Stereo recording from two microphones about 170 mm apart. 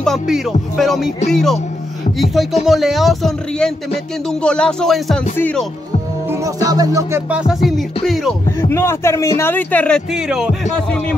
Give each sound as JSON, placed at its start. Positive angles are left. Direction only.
{"t": 0.0, "sound": "speech", "side_deg": 0}
{"t": 2.6, "sound": "speech", "side_deg": 0}
{"t": 6.4, "sound": "music", "side_deg": -20}
{"t": 8.5, "sound": "speech", "side_deg": 15}